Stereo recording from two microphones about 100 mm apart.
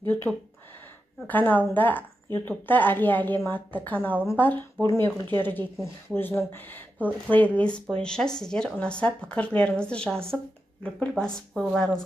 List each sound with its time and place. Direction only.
0.3 s speech: 20° left (ahead or behind); by 12.0 s 5° left (ahead or behind)